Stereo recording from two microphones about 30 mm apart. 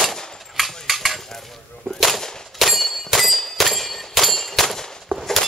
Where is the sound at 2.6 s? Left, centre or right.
Centre.